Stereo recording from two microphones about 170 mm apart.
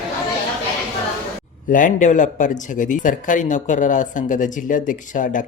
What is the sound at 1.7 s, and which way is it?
Speech, 50° left (ahead or behind).